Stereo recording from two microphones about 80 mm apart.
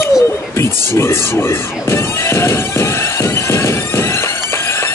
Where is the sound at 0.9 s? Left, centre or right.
Left.